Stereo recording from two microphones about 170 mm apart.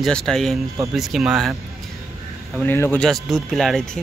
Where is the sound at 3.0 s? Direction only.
Centre (ahead or behind).